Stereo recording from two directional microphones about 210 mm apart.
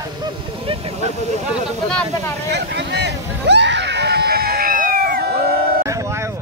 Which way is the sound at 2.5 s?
55° right (ahead or behind).